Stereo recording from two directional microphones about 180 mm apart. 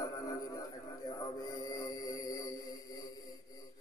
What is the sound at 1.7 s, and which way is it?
Mantra, 20° left (ahead or behind).